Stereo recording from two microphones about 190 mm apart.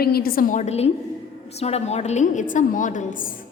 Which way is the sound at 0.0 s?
55° left (ahead or behind).